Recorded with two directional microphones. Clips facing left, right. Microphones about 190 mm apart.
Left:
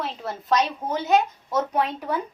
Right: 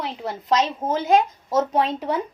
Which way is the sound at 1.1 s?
30° right (ahead or behind).